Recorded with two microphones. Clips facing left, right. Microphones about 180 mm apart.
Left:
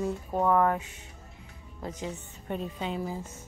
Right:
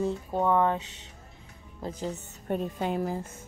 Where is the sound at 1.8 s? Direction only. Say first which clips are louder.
Right 2 dB; 35° right (ahead or behind); by 3.4 s 55° right (ahead or behind).